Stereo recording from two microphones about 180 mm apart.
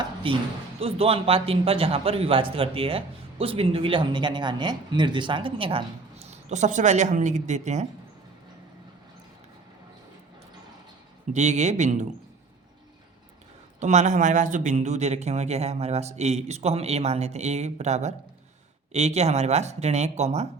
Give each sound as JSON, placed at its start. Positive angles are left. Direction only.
{"t": 0.0, "sound": "a sound", "side_deg": -30}
{"t": 0.8, "sound": "a man's voice", "side_deg": -35}
{"t": 11.3, "sound": "a man's voice", "side_deg": -40}
{"t": 13.7, "sound": "a man's voice", "side_deg": -40}